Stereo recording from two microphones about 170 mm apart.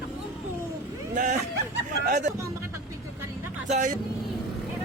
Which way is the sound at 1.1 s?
45° right (ahead or behind).